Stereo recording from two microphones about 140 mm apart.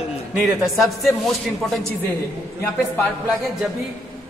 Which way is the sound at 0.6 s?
Centre (ahead or behind).